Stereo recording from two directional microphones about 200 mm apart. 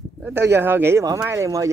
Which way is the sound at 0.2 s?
10° right (ahead or behind).